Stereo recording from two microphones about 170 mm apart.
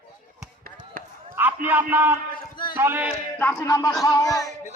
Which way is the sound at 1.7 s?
10° right (ahead or behind).